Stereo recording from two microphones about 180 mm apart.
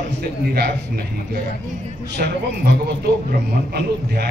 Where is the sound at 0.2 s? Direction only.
60° right (ahead or behind).